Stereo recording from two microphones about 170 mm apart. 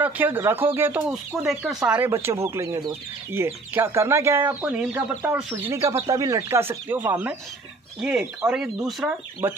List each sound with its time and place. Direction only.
0.0 s speech: 10° right (ahead or behind)
1.9 s speech: 15° right (ahead or behind)